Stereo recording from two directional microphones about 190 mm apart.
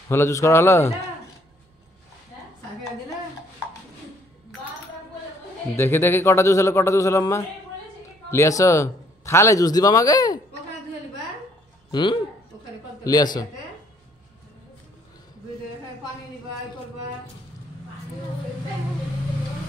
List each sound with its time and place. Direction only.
0.1 s speech: 15° left (ahead or behind)
5.8 s speech: 10° left (ahead or behind)
11.9 s a man's voice: 25° left (ahead or behind)